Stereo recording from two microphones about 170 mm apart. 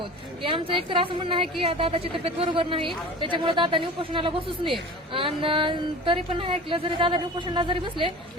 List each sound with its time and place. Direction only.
0.4 s speech: 30° right (ahead or behind)